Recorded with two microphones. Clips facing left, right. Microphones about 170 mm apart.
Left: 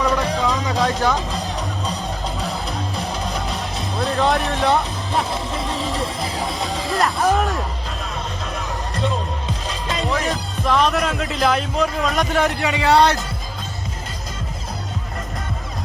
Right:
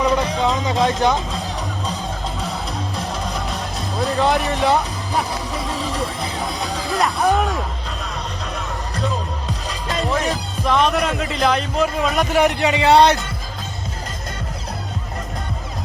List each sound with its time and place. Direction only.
0.0 s music: 25° right (ahead or behind)
2.4 s music: centre (ahead or behind)
9.0 s music: centre (ahead or behind)
12.4 s speech: 20° right (ahead or behind)